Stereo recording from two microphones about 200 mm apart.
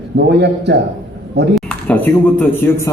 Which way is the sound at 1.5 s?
5° left (ahead or behind).